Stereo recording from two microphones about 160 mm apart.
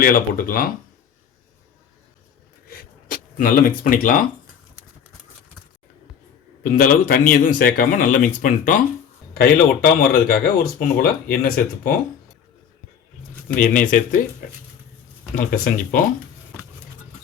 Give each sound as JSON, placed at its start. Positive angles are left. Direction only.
{"t": 0.0, "sound": "speech", "side_deg": 60}
{"t": 2.6, "sound": "a sound", "side_deg": 65}
{"t": 6.6, "sound": "speech", "side_deg": 60}
{"t": 9.4, "sound": "speech", "side_deg": 65}
{"t": 13.6, "sound": "speech", "side_deg": 55}
{"t": 15.4, "sound": "speech", "side_deg": 55}